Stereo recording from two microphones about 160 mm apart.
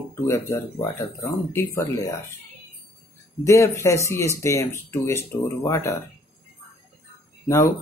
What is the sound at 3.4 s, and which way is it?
Speech, 20° left (ahead or behind).